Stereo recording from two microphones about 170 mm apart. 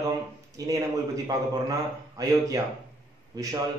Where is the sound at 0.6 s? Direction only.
20° right (ahead or behind).